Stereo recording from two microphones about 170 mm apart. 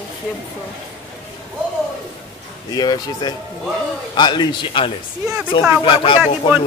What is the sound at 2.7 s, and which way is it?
Speech, 25° left (ahead or behind).